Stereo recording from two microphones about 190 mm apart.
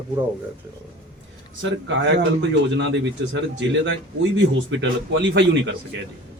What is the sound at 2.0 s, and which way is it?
A man's voice, 65° right (ahead or behind).